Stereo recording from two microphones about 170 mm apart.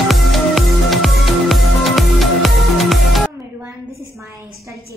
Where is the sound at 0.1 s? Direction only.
Centre (ahead or behind).